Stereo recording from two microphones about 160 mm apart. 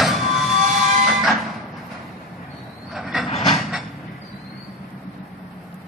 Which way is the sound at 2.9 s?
Centre (ahead or behind).